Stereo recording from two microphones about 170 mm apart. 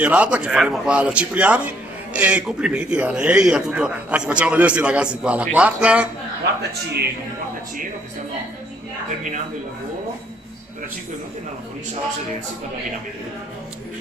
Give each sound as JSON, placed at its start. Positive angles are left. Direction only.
{"t": 0.0, "sound": "a man's voice", "side_deg": -10}
{"t": 6.5, "sound": "a man's voice", "side_deg": -90}